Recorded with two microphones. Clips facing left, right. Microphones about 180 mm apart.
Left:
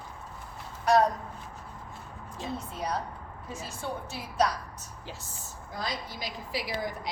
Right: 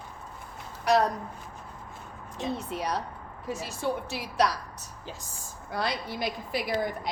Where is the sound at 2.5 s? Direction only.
75° right (ahead or behind).